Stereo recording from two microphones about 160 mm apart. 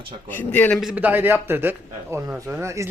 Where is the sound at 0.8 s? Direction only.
5° right (ahead or behind).